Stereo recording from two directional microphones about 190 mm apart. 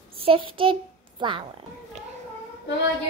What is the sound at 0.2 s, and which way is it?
Speech, 30° right (ahead or behind).